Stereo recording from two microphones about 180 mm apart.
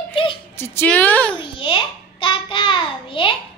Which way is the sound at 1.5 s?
30° left (ahead or behind).